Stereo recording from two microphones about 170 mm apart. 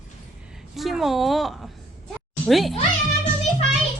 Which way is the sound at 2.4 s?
Centre (ahead or behind).